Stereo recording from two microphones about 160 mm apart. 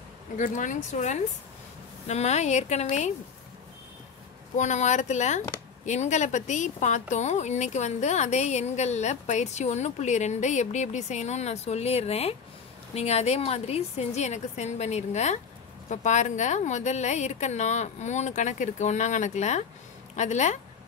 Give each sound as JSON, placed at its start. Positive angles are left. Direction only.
{"t": 0.4, "sound": "speech", "side_deg": 50}
{"t": 4.6, "sound": "speech", "side_deg": 50}